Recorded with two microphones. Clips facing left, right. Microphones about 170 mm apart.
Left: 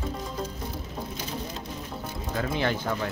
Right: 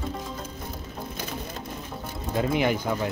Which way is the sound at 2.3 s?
20° right (ahead or behind).